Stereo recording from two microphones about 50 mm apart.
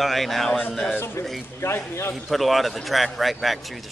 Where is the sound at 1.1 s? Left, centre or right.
Left.